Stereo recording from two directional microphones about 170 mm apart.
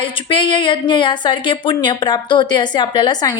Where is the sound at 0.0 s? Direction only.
30° left (ahead or behind).